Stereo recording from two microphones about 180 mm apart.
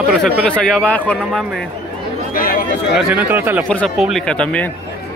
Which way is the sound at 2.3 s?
55° left (ahead or behind).